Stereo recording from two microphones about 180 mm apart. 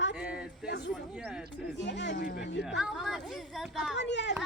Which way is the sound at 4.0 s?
75° left (ahead or behind).